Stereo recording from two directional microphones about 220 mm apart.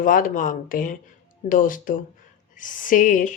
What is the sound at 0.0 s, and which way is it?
A woman's voice, 40° left (ahead or behind).